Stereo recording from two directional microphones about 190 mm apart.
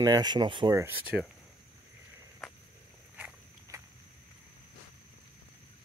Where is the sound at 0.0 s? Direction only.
20° right (ahead or behind).